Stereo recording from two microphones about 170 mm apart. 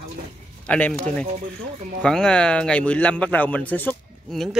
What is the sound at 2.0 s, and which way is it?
Speech, 5° left (ahead or behind).